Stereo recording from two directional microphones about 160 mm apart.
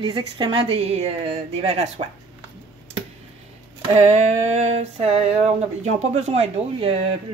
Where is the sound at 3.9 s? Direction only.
40° right (ahead or behind).